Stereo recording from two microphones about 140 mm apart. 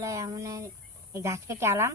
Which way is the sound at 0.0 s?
20° right (ahead or behind).